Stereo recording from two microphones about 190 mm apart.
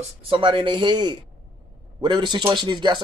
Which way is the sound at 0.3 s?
25° right (ahead or behind).